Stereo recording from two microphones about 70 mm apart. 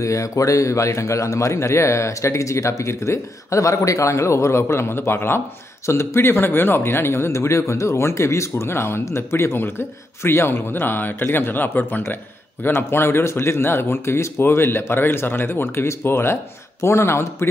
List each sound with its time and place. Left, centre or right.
0.0 s a man's voice: left